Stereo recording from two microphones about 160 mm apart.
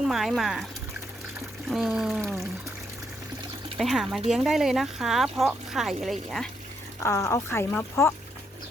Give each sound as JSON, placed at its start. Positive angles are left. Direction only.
{"t": 0.1, "sound": "speech", "side_deg": 0}
{"t": 1.7, "sound": "speech", "side_deg": -5}
{"t": 3.8, "sound": "speech", "side_deg": 0}
{"t": 7.0, "sound": "speech", "side_deg": 15}